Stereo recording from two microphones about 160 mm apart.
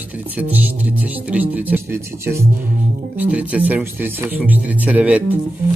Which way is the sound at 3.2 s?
10° right (ahead or behind).